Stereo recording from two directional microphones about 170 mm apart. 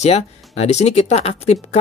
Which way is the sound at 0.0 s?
40° left (ahead or behind).